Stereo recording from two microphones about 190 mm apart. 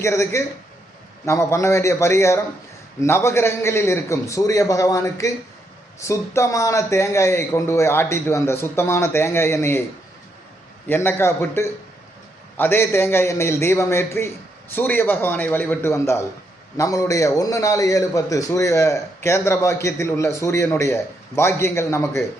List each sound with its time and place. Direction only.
0.0 s a man's voice: 15° left (ahead or behind)
10.8 s a man's voice: 10° left (ahead or behind)